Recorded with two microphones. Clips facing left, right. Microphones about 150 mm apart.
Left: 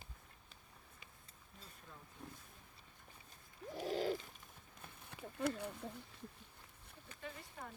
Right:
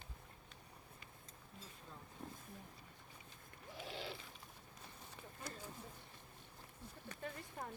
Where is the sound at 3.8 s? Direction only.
40° left (ahead or behind).